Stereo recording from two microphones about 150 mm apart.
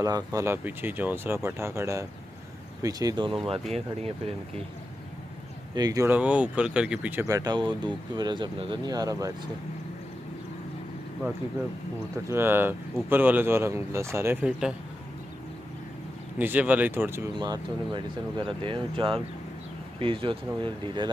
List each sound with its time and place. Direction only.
0.0 s speech: 25° right (ahead or behind)
5.8 s speech: 25° right (ahead or behind)
6.0 s speech: 10° right (ahead or behind)
7.2 s speech: 25° right (ahead or behind)
12.3 s speech: 15° right (ahead or behind)
16.3 s speech: 10° right (ahead or behind)
17.4 s speech: 30° right (ahead or behind)